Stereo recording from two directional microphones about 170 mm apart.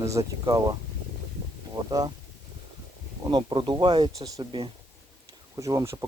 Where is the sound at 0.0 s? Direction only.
20° right (ahead or behind).